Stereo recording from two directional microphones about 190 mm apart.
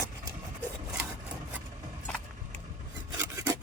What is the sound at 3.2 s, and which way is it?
Filing, 15° right (ahead or behind).